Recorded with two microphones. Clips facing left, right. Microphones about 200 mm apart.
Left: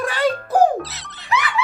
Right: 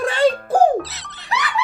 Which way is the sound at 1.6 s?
35° right (ahead or behind).